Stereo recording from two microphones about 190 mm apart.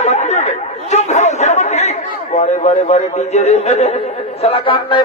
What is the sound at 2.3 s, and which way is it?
A man's voice, 35° left (ahead or behind).